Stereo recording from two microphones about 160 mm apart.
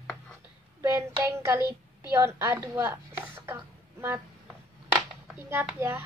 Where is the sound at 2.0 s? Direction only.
15° right (ahead or behind).